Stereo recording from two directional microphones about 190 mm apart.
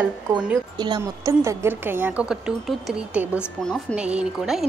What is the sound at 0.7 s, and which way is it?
A woman's voice, 25° right (ahead or behind).